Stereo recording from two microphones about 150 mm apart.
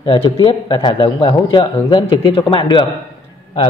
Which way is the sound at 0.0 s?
35° left (ahead or behind).